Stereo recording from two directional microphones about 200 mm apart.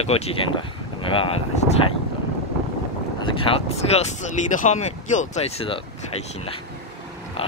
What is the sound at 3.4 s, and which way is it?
Speech, 30° left (ahead or behind).